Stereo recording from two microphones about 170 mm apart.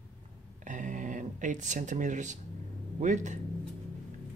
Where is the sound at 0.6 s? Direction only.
50° right (ahead or behind).